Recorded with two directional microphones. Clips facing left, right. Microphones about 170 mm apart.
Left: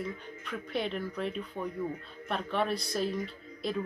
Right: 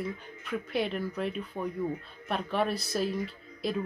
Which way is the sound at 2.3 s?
5° right (ahead or behind).